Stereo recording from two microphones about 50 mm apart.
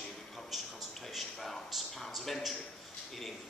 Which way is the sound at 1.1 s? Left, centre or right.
Centre.